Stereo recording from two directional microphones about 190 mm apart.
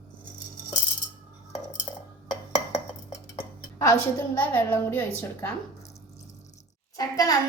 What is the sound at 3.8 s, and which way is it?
A woman's voice, 15° left (ahead or behind).